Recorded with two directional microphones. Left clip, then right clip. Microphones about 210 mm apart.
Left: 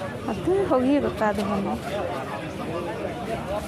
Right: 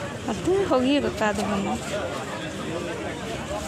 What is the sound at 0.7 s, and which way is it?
Speech, 5° left (ahead or behind).